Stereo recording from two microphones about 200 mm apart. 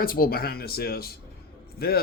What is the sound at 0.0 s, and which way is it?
Speech, 45° left (ahead or behind).